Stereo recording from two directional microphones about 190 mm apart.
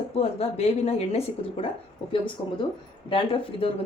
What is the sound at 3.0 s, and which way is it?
Speech, 30° left (ahead or behind).